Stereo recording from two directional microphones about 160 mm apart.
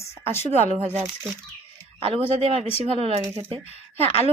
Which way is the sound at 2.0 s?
35° right (ahead or behind).